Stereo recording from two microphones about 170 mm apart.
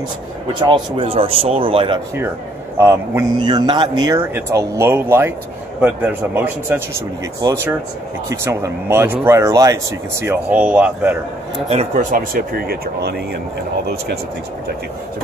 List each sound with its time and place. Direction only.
0.5 s a man's voice: 30° right (ahead or behind)
2.8 s speech: 15° right (ahead or behind)
3.3 s speech: 25° right (ahead or behind)
11.5 s a man's voice: 30° right (ahead or behind)
11.9 s speech: 50° right (ahead or behind); by 13.4 s 65° right (ahead or behind)